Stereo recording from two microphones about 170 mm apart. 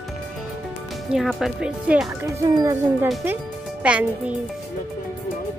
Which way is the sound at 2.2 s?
20° right (ahead or behind).